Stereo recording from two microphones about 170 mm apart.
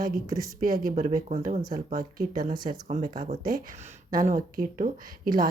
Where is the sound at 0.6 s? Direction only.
55° right (ahead or behind).